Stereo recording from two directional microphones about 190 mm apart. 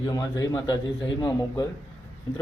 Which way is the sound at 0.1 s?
20° left (ahead or behind).